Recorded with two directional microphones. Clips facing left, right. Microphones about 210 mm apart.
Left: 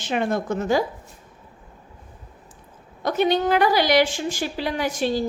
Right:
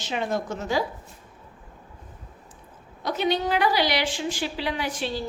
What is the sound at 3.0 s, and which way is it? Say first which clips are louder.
A woman's voice: left 4 dB; 50° left (ahead or behind).